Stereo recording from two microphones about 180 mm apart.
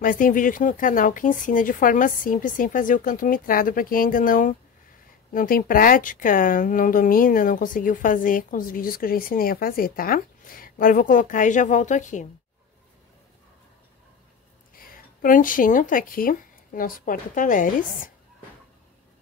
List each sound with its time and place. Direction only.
0.0 s speech: 50° left (ahead or behind)
14.8 s speech: 50° left (ahead or behind)